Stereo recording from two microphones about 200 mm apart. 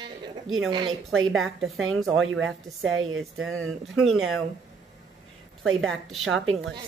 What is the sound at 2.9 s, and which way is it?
Speech, 85° right.